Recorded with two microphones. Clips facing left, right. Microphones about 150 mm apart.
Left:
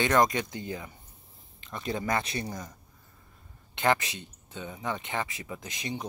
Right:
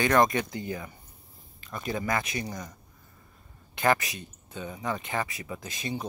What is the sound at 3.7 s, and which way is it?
Speech, 20° left (ahead or behind).